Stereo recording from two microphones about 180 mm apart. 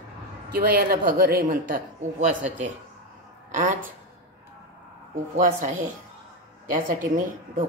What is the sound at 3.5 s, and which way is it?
Speech, 45° right (ahead or behind).